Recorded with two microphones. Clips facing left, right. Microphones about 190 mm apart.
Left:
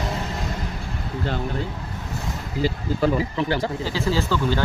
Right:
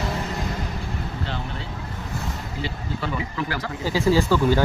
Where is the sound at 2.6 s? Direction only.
40° left (ahead or behind).